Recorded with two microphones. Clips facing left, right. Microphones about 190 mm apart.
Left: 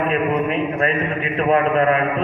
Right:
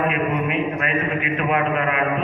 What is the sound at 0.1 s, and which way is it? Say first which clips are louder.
A man's voice: left 3 dB; 35° left (ahead or behind).